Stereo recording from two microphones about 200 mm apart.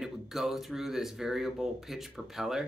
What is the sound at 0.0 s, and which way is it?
Speech, centre (ahead or behind).